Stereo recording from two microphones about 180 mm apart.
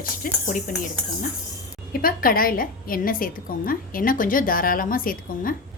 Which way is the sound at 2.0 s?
55° left (ahead or behind).